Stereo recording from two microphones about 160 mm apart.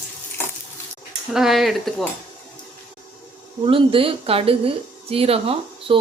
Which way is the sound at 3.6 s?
35° right (ahead or behind).